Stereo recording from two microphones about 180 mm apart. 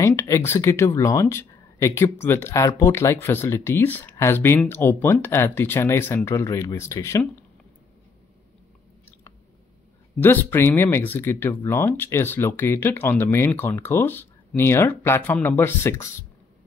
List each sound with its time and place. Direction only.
0.0 s speech: 15° left (ahead or behind)
10.2 s speech: 10° left (ahead or behind)